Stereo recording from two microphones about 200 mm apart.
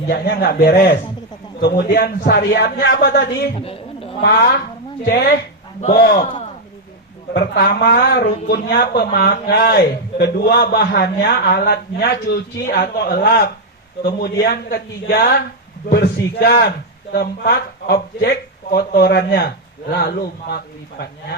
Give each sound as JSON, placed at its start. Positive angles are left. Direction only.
{"t": 0.1, "sound": "a man's voice", "side_deg": 50}
{"t": 3.5, "sound": "a sound", "side_deg": 30}
{"t": 4.2, "sound": "a man's voice", "side_deg": 50}
{"t": 7.3, "sound": "a man's voice", "side_deg": 55}